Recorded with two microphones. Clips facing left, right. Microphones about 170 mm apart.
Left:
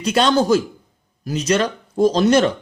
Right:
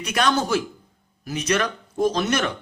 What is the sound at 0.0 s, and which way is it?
A man's voice, 30° left (ahead or behind).